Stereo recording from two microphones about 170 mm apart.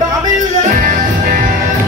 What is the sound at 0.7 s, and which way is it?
Music, 55° right (ahead or behind).